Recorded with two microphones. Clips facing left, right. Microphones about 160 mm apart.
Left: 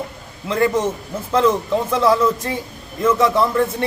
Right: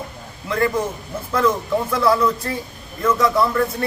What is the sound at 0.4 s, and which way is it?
A man's voice, 20° left (ahead or behind).